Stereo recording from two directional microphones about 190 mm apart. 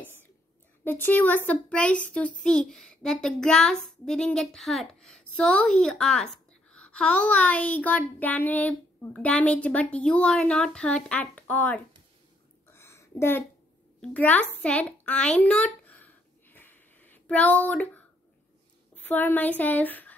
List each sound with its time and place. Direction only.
0.8 s a woman's voice: 10° left (ahead or behind)
12.7 s a sound: 15° left (ahead or behind)
18.9 s a woman's voice: 10° left (ahead or behind)